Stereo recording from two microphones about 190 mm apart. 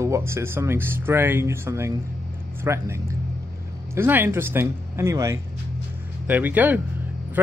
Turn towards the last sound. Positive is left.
turn(degrees=-10)  # may be behind; listen again after turning